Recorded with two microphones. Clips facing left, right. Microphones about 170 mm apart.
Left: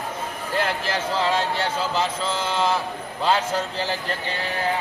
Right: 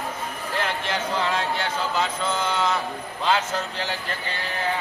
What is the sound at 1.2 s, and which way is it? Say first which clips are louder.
Speech: left 2 dB; 30° left (ahead or behind).